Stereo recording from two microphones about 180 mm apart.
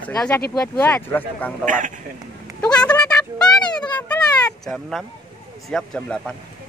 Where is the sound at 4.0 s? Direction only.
20° left (ahead or behind).